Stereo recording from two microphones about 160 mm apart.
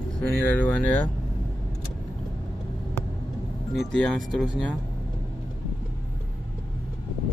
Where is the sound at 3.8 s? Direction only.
Centre (ahead or behind).